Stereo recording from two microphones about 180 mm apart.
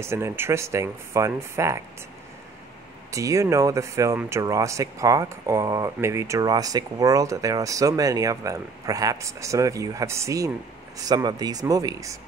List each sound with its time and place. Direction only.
0.0 s speech: 15° right (ahead or behind)
3.1 s speech: 15° right (ahead or behind)